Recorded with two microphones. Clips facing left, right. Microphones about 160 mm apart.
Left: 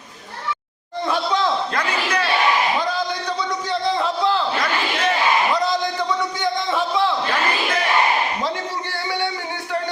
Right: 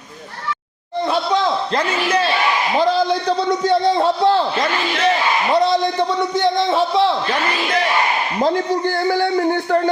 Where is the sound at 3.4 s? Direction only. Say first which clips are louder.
Right 8 dB; 55° right (ahead or behind).